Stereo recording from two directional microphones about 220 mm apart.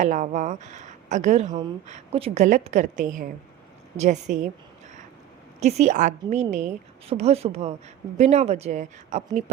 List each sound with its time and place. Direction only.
0.0 s a woman's voice: 35° right (ahead or behind)
5.5 s a woman's voice: 30° right (ahead or behind)